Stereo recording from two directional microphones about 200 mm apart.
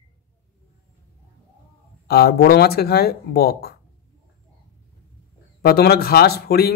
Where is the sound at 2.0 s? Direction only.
50° left (ahead or behind).